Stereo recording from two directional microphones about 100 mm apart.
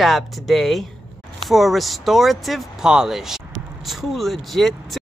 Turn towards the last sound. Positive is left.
turn(degrees=0)  # may be behind; listen again after turning